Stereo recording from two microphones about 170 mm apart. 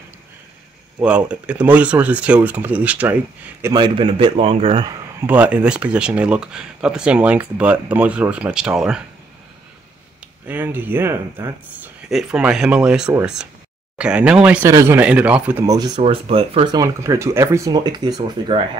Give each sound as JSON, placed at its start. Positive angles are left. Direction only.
{"t": 1.0, "sound": "speech", "side_deg": -5}
{"t": 3.7, "sound": "a man's voice", "side_deg": -30}
{"t": 5.2, "sound": "speech", "side_deg": -10}
{"t": 10.4, "sound": "speech", "side_deg": -10}
{"t": 14.7, "sound": "speech", "side_deg": -15}
{"t": 15.6, "sound": "speech", "side_deg": -20}
{"t": 16.0, "sound": "a man's voice", "side_deg": -35}
{"t": 16.7, "sound": "speech", "side_deg": -20}